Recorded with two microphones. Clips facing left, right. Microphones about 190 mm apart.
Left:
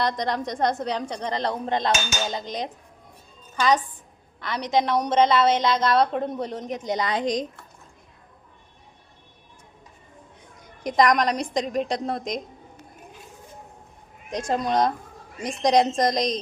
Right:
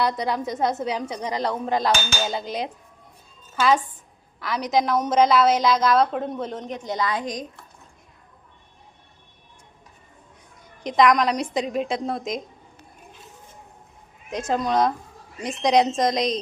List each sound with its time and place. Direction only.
0.0 s a woman's voice: 5° right (ahead or behind)
6.8 s a woman's voice: 20° left (ahead or behind)
10.9 s a woman's voice: centre (ahead or behind)
14.3 s a woman's voice: 5° right (ahead or behind)